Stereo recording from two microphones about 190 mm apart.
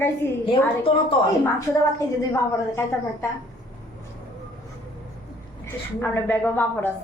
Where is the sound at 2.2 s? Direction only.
15° left (ahead or behind).